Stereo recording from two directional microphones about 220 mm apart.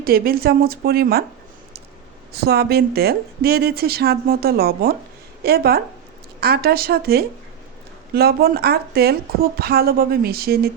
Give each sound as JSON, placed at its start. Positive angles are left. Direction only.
{"t": 0.0, "sound": "a woman's voice", "side_deg": -45}
{"t": 2.3, "sound": "a woman's voice", "side_deg": -45}